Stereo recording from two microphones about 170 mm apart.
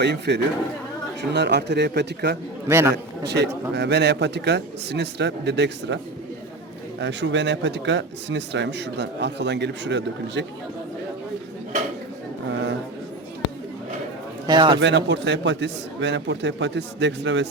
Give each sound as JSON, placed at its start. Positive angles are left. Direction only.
{"t": 0.0, "sound": "a man's voice", "side_deg": -80}
{"t": 2.6, "sound": "a man's voice", "side_deg": -15}
{"t": 2.9, "sound": "a man's voice", "side_deg": -80}
{"t": 7.0, "sound": "speech", "side_deg": -90}
{"t": 14.4, "sound": "a man's voice", "side_deg": -25}
{"t": 14.8, "sound": "speech", "side_deg": -90}